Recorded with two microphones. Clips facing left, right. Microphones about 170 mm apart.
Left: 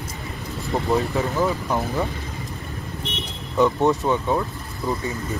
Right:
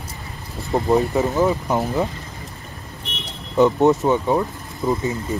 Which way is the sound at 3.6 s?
20° right (ahead or behind).